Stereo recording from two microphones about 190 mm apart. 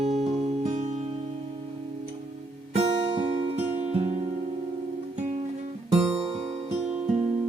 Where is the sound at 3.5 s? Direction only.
35° right (ahead or behind).